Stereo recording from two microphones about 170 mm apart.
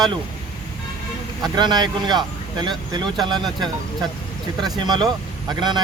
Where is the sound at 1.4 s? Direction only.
25° right (ahead or behind).